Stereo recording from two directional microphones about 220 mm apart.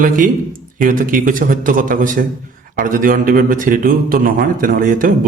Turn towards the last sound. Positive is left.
turn(degrees=-40)  # may be behind; listen again after turning